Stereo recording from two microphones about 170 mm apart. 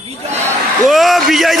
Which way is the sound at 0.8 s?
Centre (ahead or behind).